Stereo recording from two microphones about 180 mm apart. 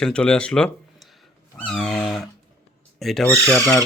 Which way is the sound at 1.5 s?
5° left (ahead or behind).